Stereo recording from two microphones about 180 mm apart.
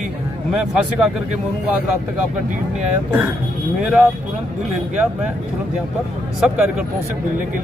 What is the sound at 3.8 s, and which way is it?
Speech, 5° right (ahead or behind).